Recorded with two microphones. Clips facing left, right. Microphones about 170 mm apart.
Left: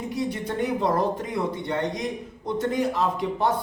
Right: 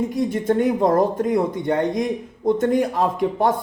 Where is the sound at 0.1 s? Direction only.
50° right (ahead or behind).